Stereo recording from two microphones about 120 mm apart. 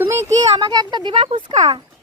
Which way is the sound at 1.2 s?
60° right (ahead or behind).